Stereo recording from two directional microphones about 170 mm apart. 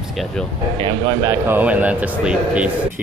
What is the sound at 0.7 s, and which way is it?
Speech, 30° right (ahead or behind).